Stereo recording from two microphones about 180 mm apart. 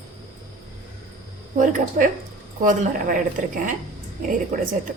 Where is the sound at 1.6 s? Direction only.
45° right (ahead or behind).